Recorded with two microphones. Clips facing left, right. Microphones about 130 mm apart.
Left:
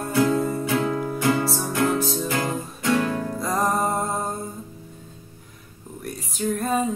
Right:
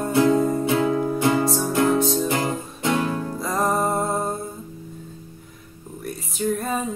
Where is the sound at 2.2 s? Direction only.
25° right (ahead or behind).